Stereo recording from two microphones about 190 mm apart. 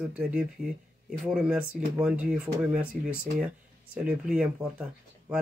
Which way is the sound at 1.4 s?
5° right (ahead or behind).